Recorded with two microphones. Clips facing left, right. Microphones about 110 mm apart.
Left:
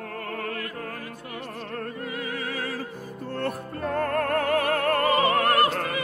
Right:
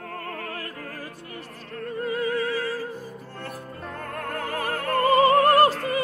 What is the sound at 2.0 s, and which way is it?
Music, 40° right (ahead or behind).